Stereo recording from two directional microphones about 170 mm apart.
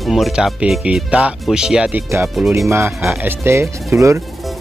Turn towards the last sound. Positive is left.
turn(degrees=-15)  # may be behind; listen again after turning